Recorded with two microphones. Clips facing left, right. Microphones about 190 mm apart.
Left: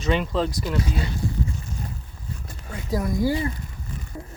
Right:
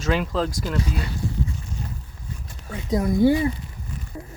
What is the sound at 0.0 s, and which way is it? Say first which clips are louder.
Speech: even; centre (ahead or behind).